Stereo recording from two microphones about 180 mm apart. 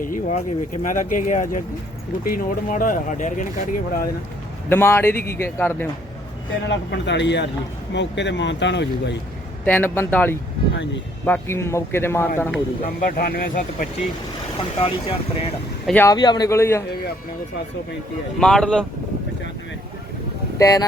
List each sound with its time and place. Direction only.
0.0 s speech: 45° left (ahead or behind)
4.7 s speech: 15° left (ahead or behind)
6.5 s speech: 80° left
9.6 s speech: 10° left (ahead or behind)
13.1 s speech: 55° left (ahead or behind)
14.8 s speech: 30° left (ahead or behind)
15.9 s speech: 10° left (ahead or behind)
16.1 s speech: 25° left (ahead or behind)
18.3 s speech: 5° left (ahead or behind)
20.6 s speech: 20° left (ahead or behind)